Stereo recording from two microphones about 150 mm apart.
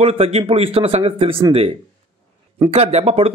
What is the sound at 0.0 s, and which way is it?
Speech, 40° right (ahead or behind).